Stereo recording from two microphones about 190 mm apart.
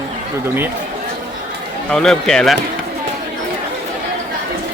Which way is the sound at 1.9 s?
Centre (ahead or behind).